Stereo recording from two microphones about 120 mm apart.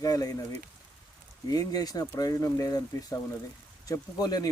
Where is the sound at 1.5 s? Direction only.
30° left (ahead or behind).